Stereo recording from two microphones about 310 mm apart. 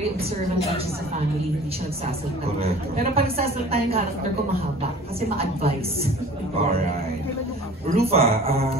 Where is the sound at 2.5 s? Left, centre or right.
Centre.